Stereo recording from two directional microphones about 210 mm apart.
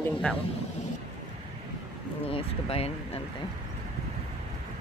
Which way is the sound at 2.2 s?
25° left (ahead or behind).